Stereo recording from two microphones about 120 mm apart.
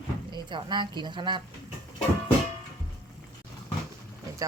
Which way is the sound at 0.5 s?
40° right (ahead or behind).